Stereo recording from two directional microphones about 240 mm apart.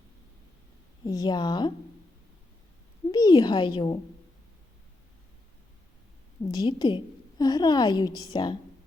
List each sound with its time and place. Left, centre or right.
1.0 s a woman's voice: centre
3.1 s a woman's voice: centre
6.5 s a woman's voice: centre